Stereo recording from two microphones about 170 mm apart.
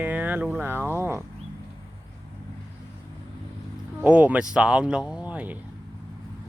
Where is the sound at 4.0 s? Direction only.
10° right (ahead or behind).